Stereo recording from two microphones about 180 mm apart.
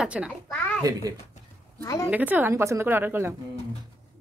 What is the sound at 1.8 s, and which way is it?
Speech, 20° left (ahead or behind).